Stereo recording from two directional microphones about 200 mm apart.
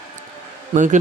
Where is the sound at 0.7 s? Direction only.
40° right (ahead or behind).